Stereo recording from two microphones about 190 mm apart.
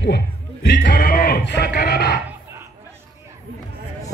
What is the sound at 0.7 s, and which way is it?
Speech, 50° left (ahead or behind).